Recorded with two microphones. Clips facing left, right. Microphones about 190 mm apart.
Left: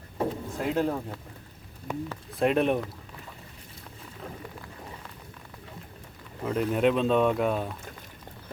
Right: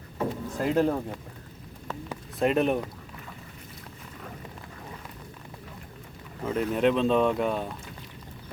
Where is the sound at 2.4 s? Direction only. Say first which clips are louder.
Even; centre (ahead or behind).